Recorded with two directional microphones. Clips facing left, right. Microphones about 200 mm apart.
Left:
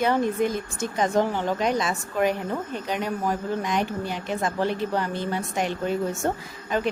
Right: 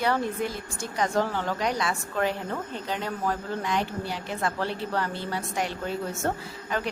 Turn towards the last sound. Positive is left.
turn(degrees=20)  # may be behind; listen again after turning